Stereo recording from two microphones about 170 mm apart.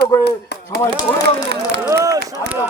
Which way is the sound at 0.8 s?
20° left (ahead or behind).